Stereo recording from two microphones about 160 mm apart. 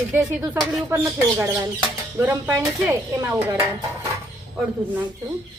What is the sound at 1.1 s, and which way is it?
Speech, 20° right (ahead or behind).